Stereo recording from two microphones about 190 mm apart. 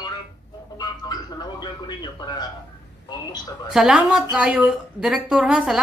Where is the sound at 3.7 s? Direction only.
5° right (ahead or behind).